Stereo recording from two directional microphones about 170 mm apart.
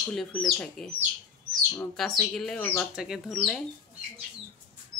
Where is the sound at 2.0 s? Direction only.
Centre (ahead or behind).